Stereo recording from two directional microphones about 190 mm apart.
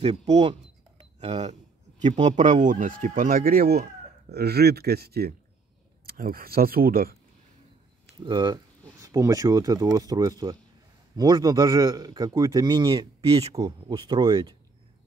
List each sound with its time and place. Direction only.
0.0 s speech: 30° right (ahead or behind); by 7.2 s 50° right (ahead or behind)
8.2 s a man's voice: 20° right (ahead or behind)